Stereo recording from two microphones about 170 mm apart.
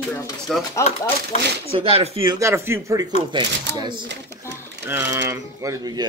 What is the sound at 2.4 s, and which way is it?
Speech, 15° right (ahead or behind).